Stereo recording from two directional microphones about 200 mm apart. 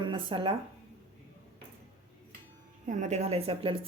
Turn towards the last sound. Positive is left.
turn(degrees=-30)  # may be behind; listen again after turning